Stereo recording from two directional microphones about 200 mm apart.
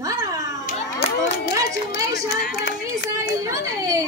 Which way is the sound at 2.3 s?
50° left (ahead or behind).